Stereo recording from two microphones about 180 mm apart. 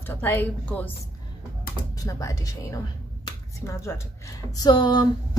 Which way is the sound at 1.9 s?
15° left (ahead or behind).